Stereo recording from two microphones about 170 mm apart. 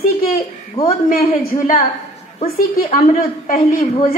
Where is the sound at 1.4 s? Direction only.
55° left (ahead or behind).